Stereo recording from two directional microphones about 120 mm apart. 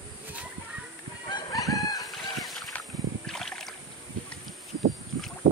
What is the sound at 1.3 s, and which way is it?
Chicken, 30° left (ahead or behind).